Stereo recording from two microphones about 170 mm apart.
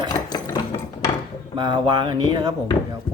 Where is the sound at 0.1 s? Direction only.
25° left (ahead or behind).